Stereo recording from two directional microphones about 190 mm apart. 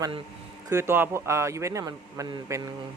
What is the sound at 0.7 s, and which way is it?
Speech, 15° right (ahead or behind).